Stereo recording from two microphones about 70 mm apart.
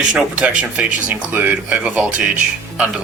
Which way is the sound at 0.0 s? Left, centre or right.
Centre.